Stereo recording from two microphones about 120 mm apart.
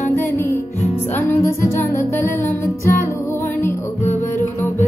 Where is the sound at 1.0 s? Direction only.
20° left (ahead or behind).